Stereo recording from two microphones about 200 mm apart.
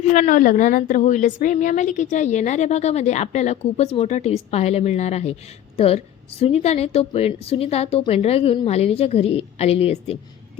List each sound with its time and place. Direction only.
0.0 s a woman's voice: 35° left (ahead or behind)